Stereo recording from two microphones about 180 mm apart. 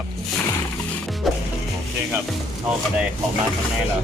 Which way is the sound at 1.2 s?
Centre (ahead or behind).